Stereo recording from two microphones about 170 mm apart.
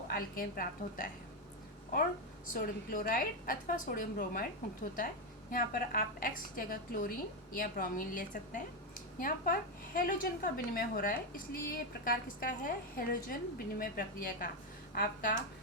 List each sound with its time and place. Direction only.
0.1 s a woman's voice: 60° left (ahead or behind)
2.5 s a woman's voice: 55° left (ahead or behind)